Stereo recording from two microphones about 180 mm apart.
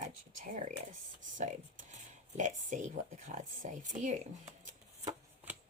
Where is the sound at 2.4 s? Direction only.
45° right (ahead or behind).